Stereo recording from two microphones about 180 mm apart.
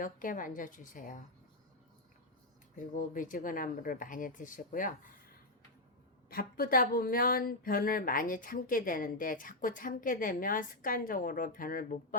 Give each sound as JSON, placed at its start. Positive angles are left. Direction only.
{"t": 0.0, "sound": "speech", "side_deg": 50}
{"t": 2.7, "sound": "speech", "side_deg": 45}
{"t": 6.3, "sound": "speech", "side_deg": 55}